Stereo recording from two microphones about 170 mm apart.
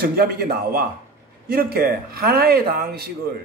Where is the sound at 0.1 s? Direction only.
60° right (ahead or behind).